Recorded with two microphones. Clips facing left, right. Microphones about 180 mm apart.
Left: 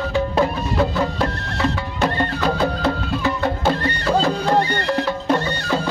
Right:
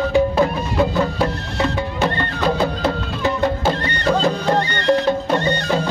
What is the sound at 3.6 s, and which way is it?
Music, 5° left (ahead or behind).